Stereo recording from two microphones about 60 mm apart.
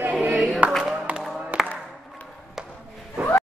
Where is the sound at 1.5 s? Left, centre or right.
Right.